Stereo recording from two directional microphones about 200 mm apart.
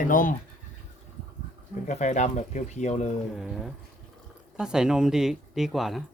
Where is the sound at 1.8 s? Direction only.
35° left (ahead or behind).